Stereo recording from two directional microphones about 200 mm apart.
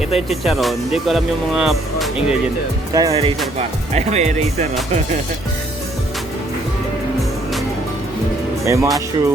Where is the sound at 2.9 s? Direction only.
15° right (ahead or behind).